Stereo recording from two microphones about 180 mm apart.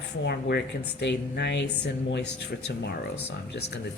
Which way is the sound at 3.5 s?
80° left.